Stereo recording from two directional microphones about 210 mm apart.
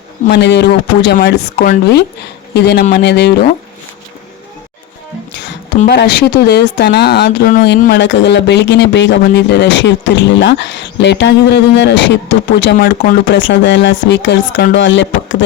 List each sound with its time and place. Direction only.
0.3 s a man's voice: 55° left (ahead or behind)
5.9 s speech: 50° left (ahead or behind)
12.7 s speech: 40° left (ahead or behind)
13.2 s speech: 60° left (ahead or behind)